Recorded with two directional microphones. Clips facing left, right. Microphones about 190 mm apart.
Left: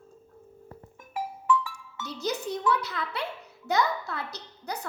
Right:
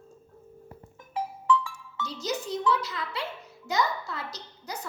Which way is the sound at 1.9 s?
60° left (ahead or behind).